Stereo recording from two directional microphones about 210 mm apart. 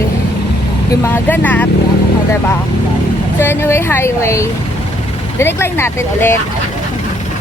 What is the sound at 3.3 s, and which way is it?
Speech, 10° left (ahead or behind).